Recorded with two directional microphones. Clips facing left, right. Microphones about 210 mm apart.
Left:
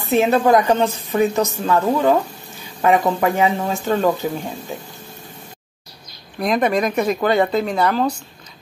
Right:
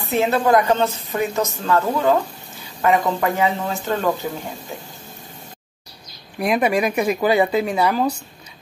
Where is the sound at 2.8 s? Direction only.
20° left (ahead or behind).